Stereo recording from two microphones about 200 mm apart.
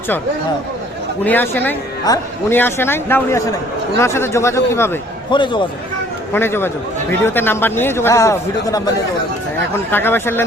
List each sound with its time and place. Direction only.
1.2 s speech: 10° left (ahead or behind)
5.3 s a man's voice: 25° left (ahead or behind)
6.3 s speech: 10° left (ahead or behind)